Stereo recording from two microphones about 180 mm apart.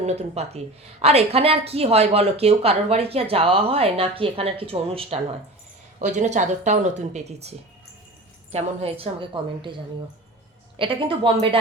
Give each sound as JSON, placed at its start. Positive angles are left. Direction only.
{"t": 0.0, "sound": "speech", "side_deg": -35}
{"t": 8.5, "sound": "a woman's voice", "side_deg": -35}
{"t": 10.8, "sound": "a woman's voice", "side_deg": -30}